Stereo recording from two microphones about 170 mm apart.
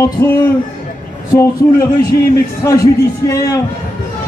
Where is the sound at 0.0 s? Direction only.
15° left (ahead or behind).